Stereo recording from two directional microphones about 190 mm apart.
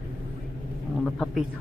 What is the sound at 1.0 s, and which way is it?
Speech, centre (ahead or behind).